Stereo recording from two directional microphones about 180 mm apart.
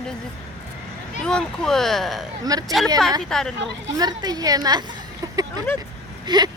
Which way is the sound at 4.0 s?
20° right (ahead or behind).